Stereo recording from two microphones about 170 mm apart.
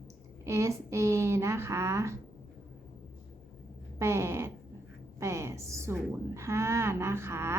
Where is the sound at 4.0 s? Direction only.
15° right (ahead or behind).